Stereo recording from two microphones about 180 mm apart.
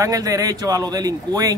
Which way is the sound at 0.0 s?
20° right (ahead or behind).